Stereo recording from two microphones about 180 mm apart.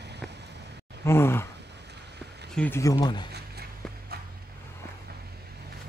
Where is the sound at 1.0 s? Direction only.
15° left (ahead or behind).